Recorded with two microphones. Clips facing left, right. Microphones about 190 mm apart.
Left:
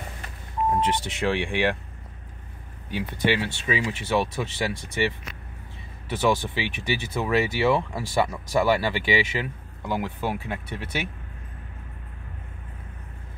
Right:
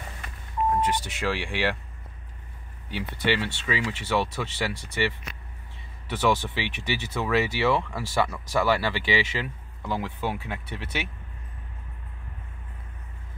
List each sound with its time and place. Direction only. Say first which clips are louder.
0.7 s speech: left 1 dB; 25° left (ahead or behind)
3.3 s speech: left 1 dB; 15° left (ahead or behind)